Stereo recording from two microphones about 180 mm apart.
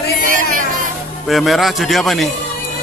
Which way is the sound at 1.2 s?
Centre (ahead or behind).